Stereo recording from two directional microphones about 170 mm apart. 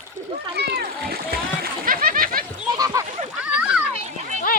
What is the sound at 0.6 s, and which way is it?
Splash, 65° right (ahead or behind).